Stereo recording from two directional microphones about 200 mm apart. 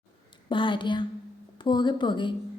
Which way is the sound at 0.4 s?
25° left (ahead or behind).